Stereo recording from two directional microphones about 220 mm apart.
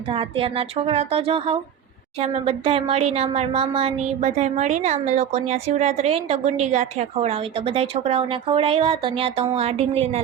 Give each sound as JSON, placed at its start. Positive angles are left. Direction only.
{"t": 0.1, "sound": "speech", "side_deg": -25}